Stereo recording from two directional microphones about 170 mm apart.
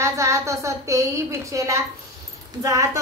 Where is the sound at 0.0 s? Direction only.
20° right (ahead or behind).